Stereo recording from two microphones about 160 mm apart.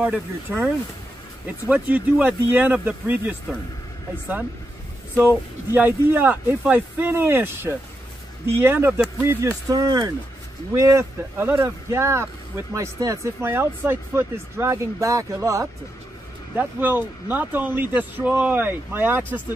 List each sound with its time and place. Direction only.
0.0 s speech: 10° right (ahead or behind)
1.7 s speech: 10° right (ahead or behind)
5.7 s speech: 15° right (ahead or behind)